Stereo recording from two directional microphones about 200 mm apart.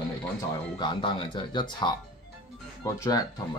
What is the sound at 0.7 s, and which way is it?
Speech, 25° left (ahead or behind).